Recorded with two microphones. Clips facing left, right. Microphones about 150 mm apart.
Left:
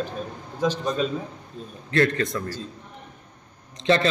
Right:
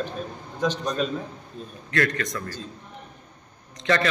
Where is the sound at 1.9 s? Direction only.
30° left (ahead or behind).